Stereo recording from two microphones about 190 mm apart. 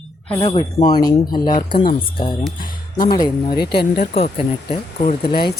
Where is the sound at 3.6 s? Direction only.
55° left (ahead or behind).